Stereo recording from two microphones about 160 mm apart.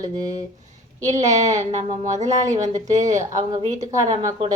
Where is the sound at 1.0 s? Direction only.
45° right (ahead or behind).